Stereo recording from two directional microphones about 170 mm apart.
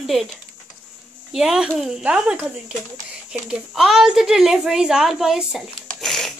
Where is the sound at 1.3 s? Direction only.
5° right (ahead or behind).